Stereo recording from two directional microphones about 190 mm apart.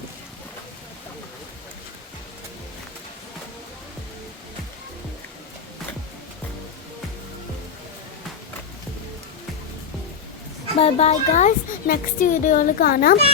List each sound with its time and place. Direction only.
10.8 s speech: 35° left (ahead or behind); by 13.1 s 50° left (ahead or behind)